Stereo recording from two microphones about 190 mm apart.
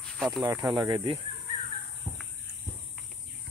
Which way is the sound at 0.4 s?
25° right (ahead or behind).